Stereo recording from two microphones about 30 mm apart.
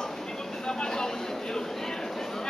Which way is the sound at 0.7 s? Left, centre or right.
Left.